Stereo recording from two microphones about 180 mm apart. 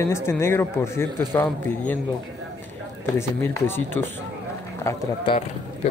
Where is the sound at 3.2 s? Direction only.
15° left (ahead or behind).